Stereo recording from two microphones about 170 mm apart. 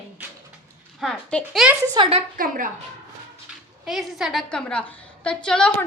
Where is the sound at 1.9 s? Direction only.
30° right (ahead or behind).